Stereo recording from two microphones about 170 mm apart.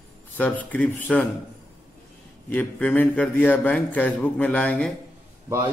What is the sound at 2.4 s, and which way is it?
A man's voice, 10° left (ahead or behind).